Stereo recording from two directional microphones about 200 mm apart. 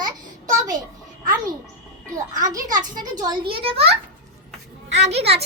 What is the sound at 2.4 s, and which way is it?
A child's voice, 20° right (ahead or behind).